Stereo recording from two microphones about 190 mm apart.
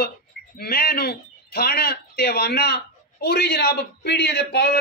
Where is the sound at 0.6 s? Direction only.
55° left (ahead or behind).